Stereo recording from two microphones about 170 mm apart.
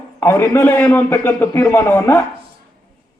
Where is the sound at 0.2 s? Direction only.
15° left (ahead or behind).